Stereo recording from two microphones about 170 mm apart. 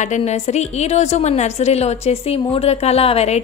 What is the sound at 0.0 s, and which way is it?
A woman's voice, 45° left (ahead or behind).